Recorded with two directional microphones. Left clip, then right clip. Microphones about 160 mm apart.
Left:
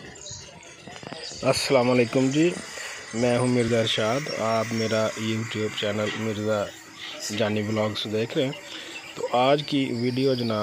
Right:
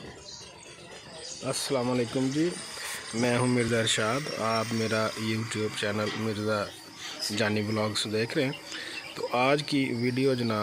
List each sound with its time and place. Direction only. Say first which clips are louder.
1.4 s speech: left 9 dB; 20° left (ahead or behind)
4.3 s speech: left 4 dB; centre (ahead or behind)